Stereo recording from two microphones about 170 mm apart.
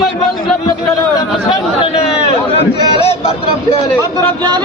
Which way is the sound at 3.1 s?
35° left (ahead or behind).